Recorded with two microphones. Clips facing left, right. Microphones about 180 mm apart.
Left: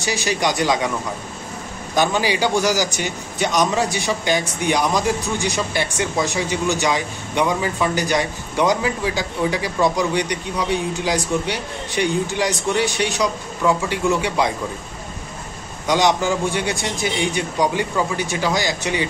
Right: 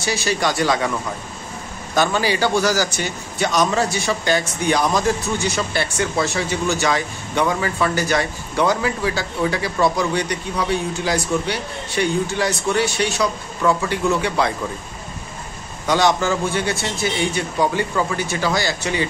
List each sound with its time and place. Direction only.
0.0 s a man's voice: 15° left (ahead or behind)
2.0 s a man's voice: 15° left (ahead or behind)
15.9 s a man's voice: 15° left (ahead or behind)